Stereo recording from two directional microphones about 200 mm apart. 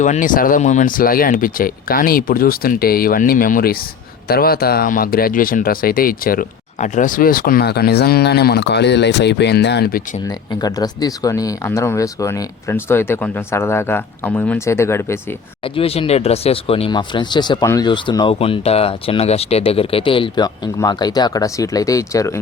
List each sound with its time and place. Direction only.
0.0 s speech: 40° left (ahead or behind)
10.2 s speech: 20° left (ahead or behind)
15.6 s speech: 30° left (ahead or behind)